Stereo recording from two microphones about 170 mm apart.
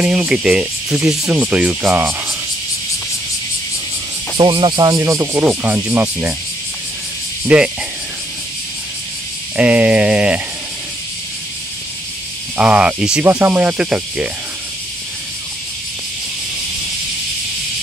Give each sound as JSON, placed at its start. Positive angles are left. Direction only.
{"t": 0.0, "sound": "speech", "side_deg": -5}
{"t": 4.4, "sound": "speech", "side_deg": -30}
{"t": 7.4, "sound": "speech", "side_deg": -5}
{"t": 9.6, "sound": "speech", "side_deg": -10}
{"t": 12.5, "sound": "speech", "side_deg": -5}